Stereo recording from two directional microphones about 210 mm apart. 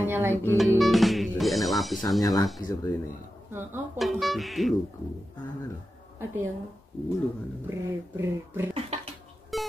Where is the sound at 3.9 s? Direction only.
Centre (ahead or behind).